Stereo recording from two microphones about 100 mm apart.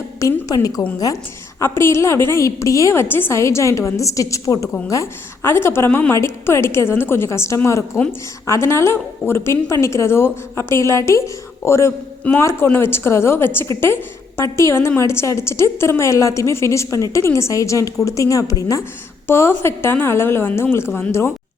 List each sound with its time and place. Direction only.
0.2 s a woman's voice: 35° left (ahead or behind)